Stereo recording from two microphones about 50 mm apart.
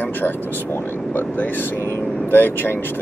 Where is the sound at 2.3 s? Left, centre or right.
Left.